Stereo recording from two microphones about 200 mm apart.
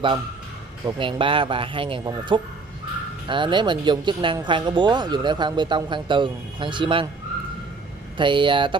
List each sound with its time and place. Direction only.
0.8 s speech: 25° right (ahead or behind)
8.2 s speech: 25° right (ahead or behind)